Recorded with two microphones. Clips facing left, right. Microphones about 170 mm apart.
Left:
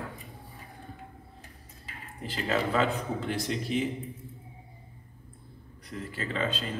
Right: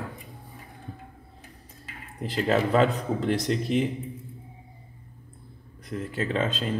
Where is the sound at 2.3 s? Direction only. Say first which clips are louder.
Right 5 dB; 40° right (ahead or behind).